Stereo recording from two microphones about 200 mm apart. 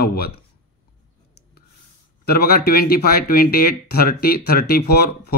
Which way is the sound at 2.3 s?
50° left (ahead or behind).